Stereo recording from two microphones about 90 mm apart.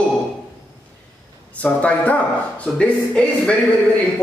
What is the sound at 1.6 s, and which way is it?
A man's voice, 15° left (ahead or behind).